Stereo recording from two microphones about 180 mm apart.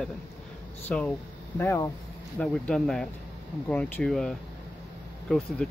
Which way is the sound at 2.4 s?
5° left (ahead or behind).